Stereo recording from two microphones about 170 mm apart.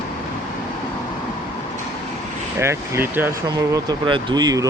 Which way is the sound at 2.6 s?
15° right (ahead or behind).